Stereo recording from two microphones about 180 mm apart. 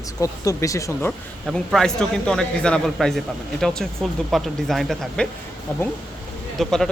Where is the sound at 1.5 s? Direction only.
Centre (ahead or behind).